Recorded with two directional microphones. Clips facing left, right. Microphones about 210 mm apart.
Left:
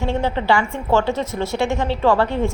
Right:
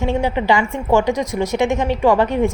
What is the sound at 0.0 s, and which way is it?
A woman's voice, 15° right (ahead or behind).